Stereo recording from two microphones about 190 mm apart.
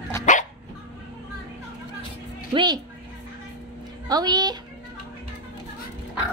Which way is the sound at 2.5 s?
25° right (ahead or behind).